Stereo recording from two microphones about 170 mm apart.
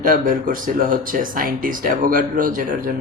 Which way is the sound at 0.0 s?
55° right (ahead or behind).